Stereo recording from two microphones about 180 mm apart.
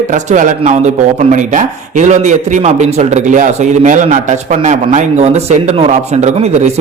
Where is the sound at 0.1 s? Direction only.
45° right (ahead or behind).